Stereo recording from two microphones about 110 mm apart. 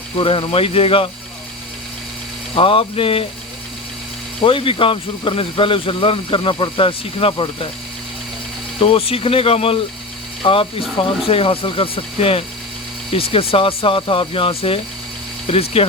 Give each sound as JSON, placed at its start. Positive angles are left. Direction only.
{"t": 0.2, "sound": "speech", "side_deg": 50}
{"t": 2.6, "sound": "speech", "side_deg": 55}
{"t": 4.4, "sound": "speech", "side_deg": 55}
{"t": 8.8, "sound": "speech", "side_deg": 60}